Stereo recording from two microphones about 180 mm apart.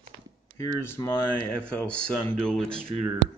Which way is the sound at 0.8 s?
15° left (ahead or behind).